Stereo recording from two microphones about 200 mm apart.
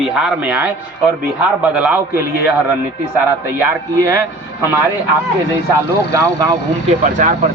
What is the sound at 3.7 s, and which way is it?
Speech, 15° right (ahead or behind).